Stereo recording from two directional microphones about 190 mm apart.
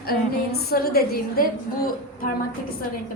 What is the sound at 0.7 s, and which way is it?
Speech, 55° left (ahead or behind).